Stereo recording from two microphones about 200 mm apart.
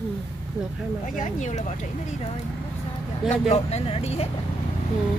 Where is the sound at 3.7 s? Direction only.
30° left (ahead or behind).